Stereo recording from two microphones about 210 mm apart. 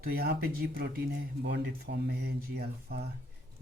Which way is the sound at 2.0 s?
50° right (ahead or behind).